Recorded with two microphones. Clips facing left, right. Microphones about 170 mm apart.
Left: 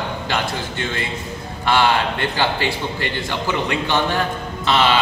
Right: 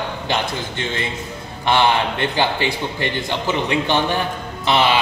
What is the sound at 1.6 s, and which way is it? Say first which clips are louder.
A man's voice: right 1 dB; 20° right (ahead or behind).